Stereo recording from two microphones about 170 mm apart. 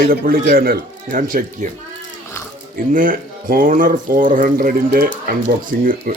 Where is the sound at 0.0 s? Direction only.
60° right (ahead or behind).